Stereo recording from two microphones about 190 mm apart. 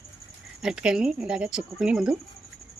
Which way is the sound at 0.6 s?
5° right (ahead or behind).